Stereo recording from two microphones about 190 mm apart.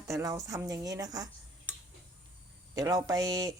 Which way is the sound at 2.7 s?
20° right (ahead or behind).